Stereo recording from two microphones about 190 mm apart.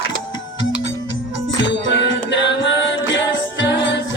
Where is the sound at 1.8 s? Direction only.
70° left (ahead or behind).